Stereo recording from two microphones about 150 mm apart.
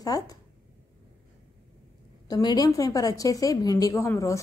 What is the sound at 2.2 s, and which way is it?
A woman's voice, 25° left (ahead or behind).